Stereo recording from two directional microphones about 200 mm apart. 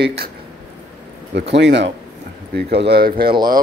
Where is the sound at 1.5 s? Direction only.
60° right (ahead or behind).